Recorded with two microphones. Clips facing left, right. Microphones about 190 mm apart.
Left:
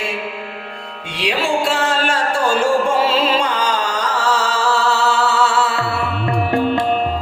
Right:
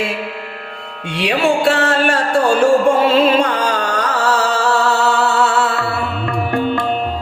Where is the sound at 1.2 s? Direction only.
65° right (ahead or behind).